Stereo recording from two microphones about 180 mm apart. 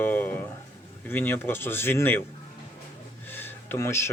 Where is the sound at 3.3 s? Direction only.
10° left (ahead or behind).